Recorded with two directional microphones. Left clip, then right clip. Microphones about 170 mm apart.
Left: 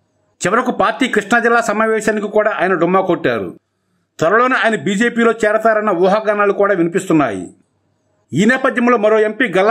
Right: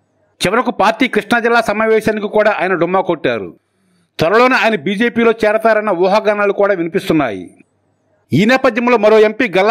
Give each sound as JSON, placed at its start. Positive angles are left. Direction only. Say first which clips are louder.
{"t": 0.4, "sound": "a man's voice", "louder": "right 1 dB", "side_deg": -25}
{"t": 8.5, "sound": "a man's voice", "louder": "right 1 dB", "side_deg": -30}